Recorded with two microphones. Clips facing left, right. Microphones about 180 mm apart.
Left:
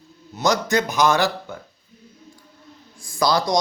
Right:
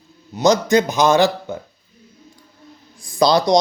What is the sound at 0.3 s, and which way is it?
Speech, 20° right (ahead or behind).